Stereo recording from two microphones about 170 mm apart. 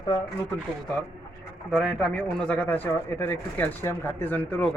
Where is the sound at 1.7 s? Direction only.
5° right (ahead or behind).